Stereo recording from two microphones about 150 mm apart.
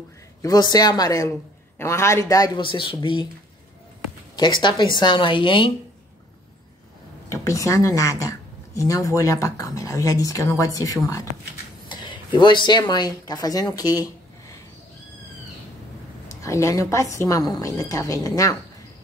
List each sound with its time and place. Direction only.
0.4 s speech: 25° left (ahead or behind)
4.4 s speech: 30° left (ahead or behind)
7.2 s speech: 20° left (ahead or behind)
16.3 s speech: 20° left (ahead or behind)